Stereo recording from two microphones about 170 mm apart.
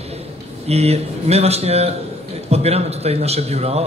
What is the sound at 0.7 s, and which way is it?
A man's voice, 40° right (ahead or behind).